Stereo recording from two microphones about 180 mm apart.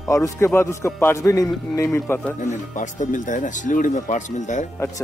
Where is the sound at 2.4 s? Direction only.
45° left (ahead or behind).